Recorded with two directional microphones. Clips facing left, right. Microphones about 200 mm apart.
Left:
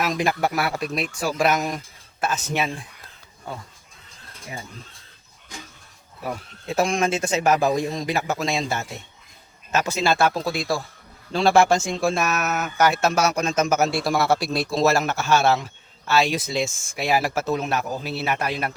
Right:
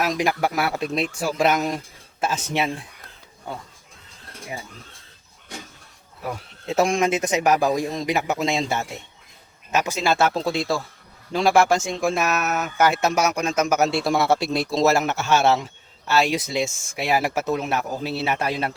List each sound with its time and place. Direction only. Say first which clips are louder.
0.2 s a man's voice: even; 15° right (ahead or behind)
6.7 s a man's voice: right 2 dB; 20° right (ahead or behind)
11.3 s a man's voice: left 1 dB; 10° right (ahead or behind)